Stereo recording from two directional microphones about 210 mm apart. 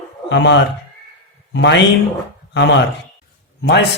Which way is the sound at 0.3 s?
55° left (ahead or behind).